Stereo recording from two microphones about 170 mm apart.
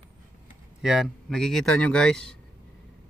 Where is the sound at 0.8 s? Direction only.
Centre (ahead or behind).